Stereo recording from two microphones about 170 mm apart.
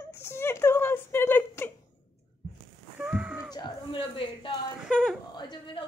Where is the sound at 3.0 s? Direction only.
5° right (ahead or behind).